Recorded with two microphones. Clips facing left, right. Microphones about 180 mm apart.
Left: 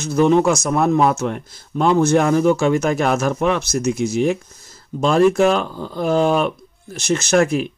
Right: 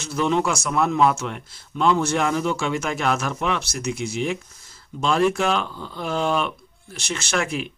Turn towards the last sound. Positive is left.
turn(degrees=45)  # may be behind; listen again after turning